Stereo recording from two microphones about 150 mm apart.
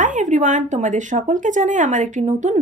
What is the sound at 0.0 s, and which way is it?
A woman's voice, 55° right (ahead or behind).